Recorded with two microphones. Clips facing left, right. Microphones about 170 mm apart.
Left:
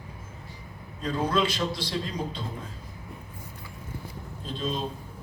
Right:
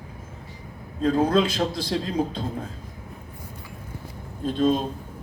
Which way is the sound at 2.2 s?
45° right (ahead or behind).